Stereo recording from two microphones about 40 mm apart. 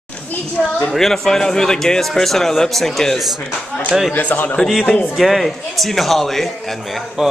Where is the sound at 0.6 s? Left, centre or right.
Left.